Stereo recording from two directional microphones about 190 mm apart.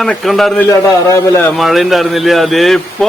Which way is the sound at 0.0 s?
Centre (ahead or behind).